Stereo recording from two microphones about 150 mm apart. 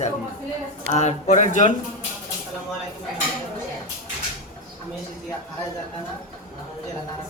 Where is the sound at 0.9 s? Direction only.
50° left (ahead or behind).